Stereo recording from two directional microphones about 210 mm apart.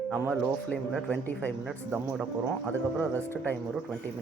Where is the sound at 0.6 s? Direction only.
5° left (ahead or behind).